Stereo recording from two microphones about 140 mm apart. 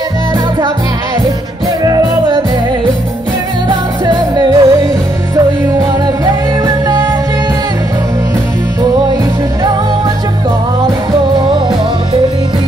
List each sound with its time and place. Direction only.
1.8 s music: 30° right (ahead or behind)
3.6 s music: 30° right (ahead or behind)